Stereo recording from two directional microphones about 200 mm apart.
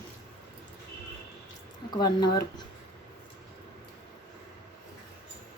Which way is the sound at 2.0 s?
20° left (ahead or behind).